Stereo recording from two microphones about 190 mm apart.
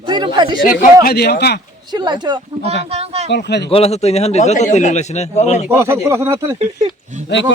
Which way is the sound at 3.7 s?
30° left (ahead or behind).